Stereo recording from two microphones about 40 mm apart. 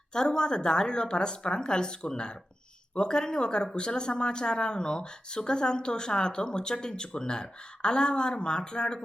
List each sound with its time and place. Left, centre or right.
0.1 s speech: centre